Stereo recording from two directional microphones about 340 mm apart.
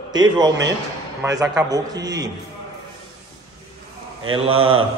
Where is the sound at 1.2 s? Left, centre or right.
Centre.